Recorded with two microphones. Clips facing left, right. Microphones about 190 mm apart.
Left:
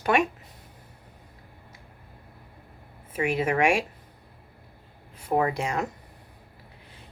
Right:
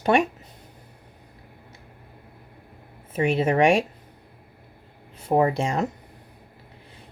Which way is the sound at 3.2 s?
30° right (ahead or behind).